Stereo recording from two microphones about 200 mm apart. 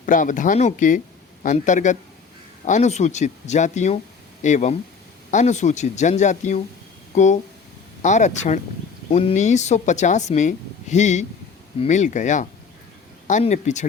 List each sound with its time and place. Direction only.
0.0 s speech: 40° left (ahead or behind)